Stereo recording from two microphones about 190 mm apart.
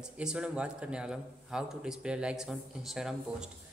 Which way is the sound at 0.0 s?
5° right (ahead or behind).